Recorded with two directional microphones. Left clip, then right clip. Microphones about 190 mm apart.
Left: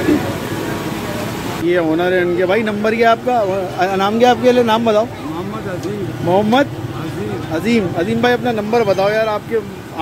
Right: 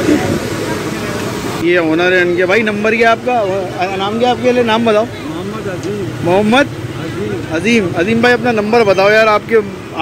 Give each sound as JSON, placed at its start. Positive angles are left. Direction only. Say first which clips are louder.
{"t": 1.7, "sound": "speech", "louder": "right 4 dB", "side_deg": 10}
{"t": 3.8, "sound": "speech", "louder": "left 2 dB", "side_deg": 30}
{"t": 4.6, "sound": "speech", "louder": "right 2 dB", "side_deg": 10}
{"t": 6.3, "sound": "speech", "louder": "right 2 dB", "side_deg": 5}